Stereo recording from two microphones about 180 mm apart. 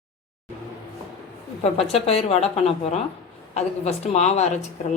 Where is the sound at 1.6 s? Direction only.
35° left (ahead or behind).